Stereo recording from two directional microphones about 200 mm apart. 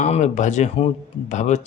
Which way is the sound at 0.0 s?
35° left (ahead or behind).